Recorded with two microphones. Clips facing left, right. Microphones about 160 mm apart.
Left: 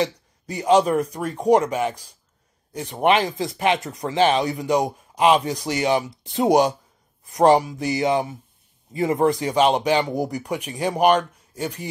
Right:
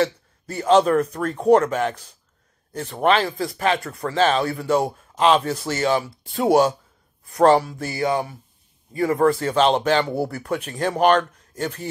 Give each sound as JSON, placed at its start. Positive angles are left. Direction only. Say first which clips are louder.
{"t": 0.0, "sound": "speech", "louder": "right 2 dB", "side_deg": 15}